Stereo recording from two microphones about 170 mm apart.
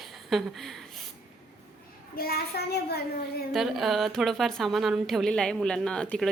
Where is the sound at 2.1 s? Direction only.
65° left (ahead or behind).